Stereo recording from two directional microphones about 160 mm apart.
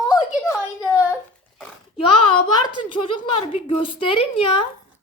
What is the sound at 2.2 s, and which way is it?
A woman's voice, 30° left (ahead or behind).